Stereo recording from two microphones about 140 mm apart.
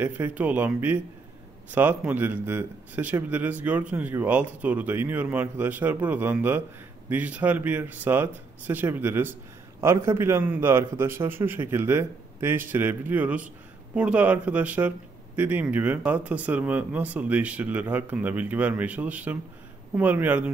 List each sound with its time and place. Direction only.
0.0 s speech: 10° right (ahead or behind)